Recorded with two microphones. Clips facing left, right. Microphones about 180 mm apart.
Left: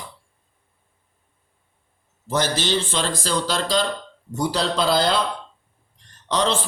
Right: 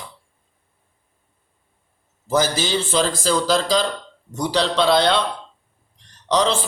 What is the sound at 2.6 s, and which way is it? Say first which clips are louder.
Speech: right 2 dB; 5° right (ahead or behind).